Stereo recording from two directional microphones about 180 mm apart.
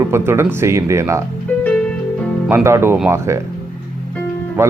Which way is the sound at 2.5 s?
15° right (ahead or behind).